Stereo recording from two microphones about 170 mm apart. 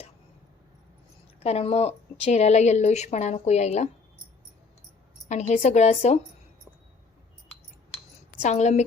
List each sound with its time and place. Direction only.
1.4 s a woman's voice: 40° left (ahead or behind)
5.3 s a woman's voice: 45° left (ahead or behind)
8.4 s a woman's voice: 40° left (ahead or behind)